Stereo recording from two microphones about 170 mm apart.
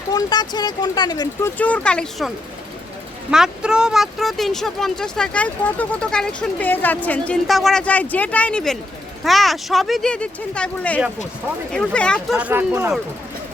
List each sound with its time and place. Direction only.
0.1 s speech: 25° left (ahead or behind); by 2.3 s 5° left (ahead or behind)
3.3 s speech: 5° right (ahead or behind)
12.4 s speech: 10° right (ahead or behind)